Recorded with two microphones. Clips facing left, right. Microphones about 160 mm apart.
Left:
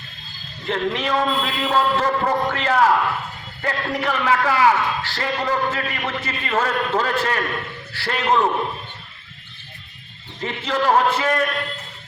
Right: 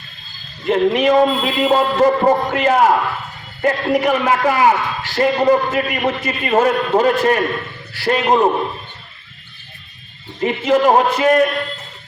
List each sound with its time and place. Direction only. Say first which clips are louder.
0.6 s a man's voice: right 9 dB; 15° right (ahead or behind)
10.4 s a man's voice: right 7 dB; 15° right (ahead or behind)